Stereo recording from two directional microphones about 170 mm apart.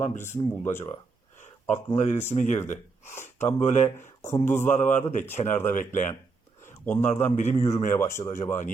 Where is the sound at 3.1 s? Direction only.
15° left (ahead or behind).